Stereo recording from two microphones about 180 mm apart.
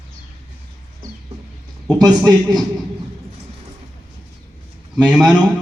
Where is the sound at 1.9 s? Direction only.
20° right (ahead or behind).